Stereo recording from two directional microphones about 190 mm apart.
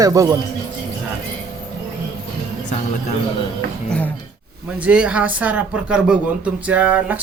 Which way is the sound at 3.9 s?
5° left (ahead or behind).